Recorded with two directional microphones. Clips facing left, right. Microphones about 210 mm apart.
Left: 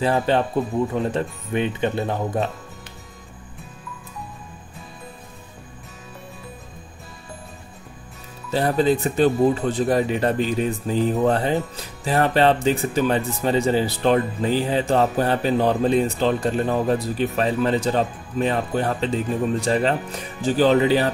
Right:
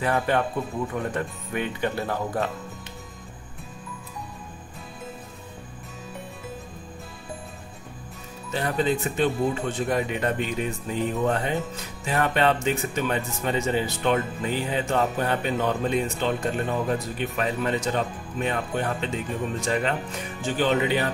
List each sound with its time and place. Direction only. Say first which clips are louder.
0.0 s speech: left 4 dB; 30° left (ahead or behind)
8.5 s speech: left 6 dB; 35° left (ahead or behind)